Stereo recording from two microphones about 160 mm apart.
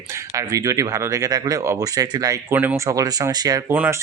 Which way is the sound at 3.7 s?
10° right (ahead or behind).